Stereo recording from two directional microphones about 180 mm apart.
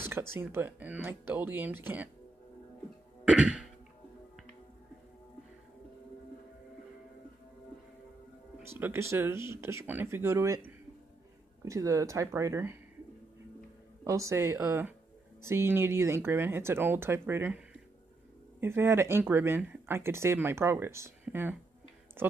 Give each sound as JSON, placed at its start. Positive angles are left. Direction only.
{"t": 0.1, "sound": "speech", "side_deg": -15}
{"t": 3.3, "sound": "cough", "side_deg": -5}
{"t": 8.6, "sound": "speech", "side_deg": -10}
{"t": 11.6, "sound": "speech", "side_deg": -15}
{"t": 14.0, "sound": "speech", "side_deg": -15}
{"t": 18.6, "sound": "speech", "side_deg": -15}